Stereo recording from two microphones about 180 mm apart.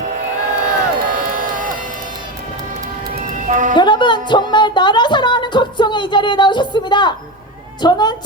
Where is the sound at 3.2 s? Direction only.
45° right (ahead or behind).